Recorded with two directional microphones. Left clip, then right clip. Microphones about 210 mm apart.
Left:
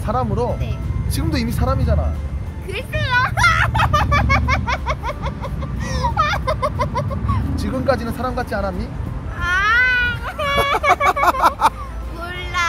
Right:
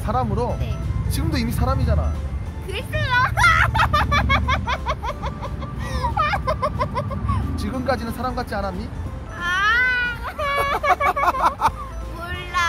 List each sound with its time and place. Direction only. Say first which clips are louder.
0.0 s speech: left 2 dB; 5° left (ahead or behind)
2.7 s a child's voice: left 2 dB; 5° right (ahead or behind)
5.9 s music: left 3 dB; 10° right (ahead or behind)
7.5 s speech: left 5 dB; 10° left (ahead or behind)
9.4 s cat: left 3 dB; 10° right (ahead or behind)
11.6 s music: left 4 dB; 15° left (ahead or behind)
12.5 s music: left 1 dB; 5° right (ahead or behind)